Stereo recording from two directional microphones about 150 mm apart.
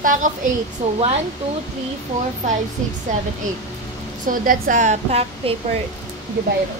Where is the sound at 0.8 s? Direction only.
45° right (ahead or behind).